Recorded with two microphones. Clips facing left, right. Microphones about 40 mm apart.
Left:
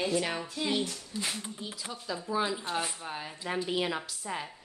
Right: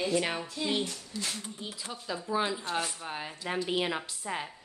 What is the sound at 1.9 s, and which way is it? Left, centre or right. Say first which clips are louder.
Speech: right 1 dB; centre.